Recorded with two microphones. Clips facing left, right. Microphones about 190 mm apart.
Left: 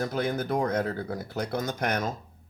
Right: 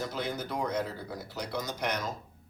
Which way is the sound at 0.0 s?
55° left (ahead or behind).